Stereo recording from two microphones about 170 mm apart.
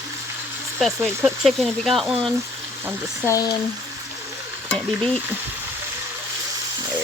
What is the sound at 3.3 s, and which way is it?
Speech, 20° left (ahead or behind).